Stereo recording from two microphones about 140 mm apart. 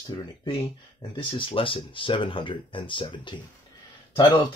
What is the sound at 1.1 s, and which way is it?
Speech, 40° left (ahead or behind).